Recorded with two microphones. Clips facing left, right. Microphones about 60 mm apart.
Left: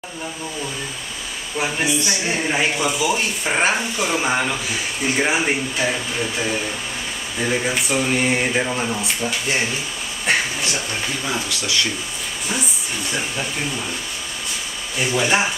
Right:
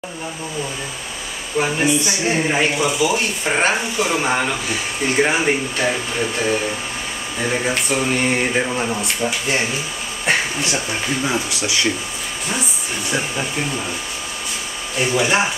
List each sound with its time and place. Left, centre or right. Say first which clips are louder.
1.6 s speech: right 4 dB; centre
11.2 s speech: right 3 dB; centre
15.0 s speech: right 2 dB; centre